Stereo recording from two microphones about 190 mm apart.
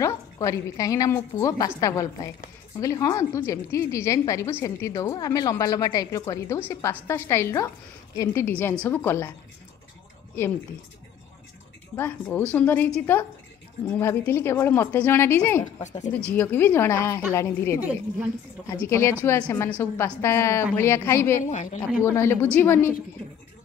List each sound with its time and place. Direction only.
0.0 s a woman's voice: 15° left (ahead or behind)
12.0 s a woman's voice: 10° left (ahead or behind)
17.7 s a woman's voice: 10° right (ahead or behind)
18.7 s a woman's voice: 15° left (ahead or behind)
21.5 s speech: 40° left (ahead or behind)
22.0 s a woman's voice: 15° left (ahead or behind)